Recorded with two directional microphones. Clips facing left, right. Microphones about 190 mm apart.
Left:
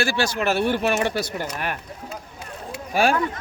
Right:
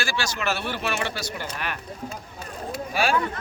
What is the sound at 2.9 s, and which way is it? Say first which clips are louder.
Speech: left 5 dB; 50° left (ahead or behind).